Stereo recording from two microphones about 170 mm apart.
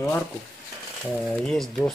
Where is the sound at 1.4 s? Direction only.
5° left (ahead or behind).